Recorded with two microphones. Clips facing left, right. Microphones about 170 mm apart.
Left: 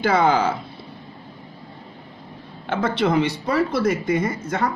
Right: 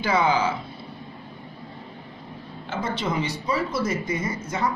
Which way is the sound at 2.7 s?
60° left (ahead or behind).